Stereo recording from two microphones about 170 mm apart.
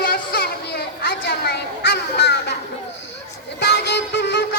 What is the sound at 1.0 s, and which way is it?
Children playing, 70° left (ahead or behind).